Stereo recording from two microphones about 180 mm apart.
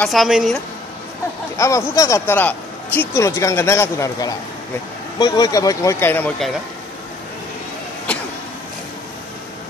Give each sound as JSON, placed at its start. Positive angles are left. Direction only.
{"t": 0.0, "sound": "a woman's voice", "side_deg": 0}
{"t": 1.6, "sound": "speech", "side_deg": 15}